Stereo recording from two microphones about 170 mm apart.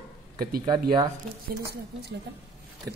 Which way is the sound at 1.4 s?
65° right (ahead or behind).